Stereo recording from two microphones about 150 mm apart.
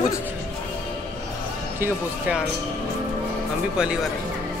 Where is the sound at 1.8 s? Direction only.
10° right (ahead or behind).